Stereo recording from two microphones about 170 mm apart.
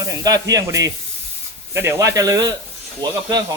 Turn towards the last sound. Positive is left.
turn(degrees=-25)  # may be behind; listen again after turning